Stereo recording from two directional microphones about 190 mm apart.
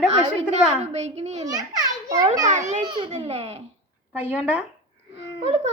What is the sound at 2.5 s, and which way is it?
Speech, 40° right (ahead or behind).